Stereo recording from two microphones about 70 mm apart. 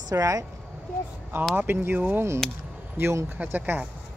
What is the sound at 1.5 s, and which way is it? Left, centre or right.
Speech, right.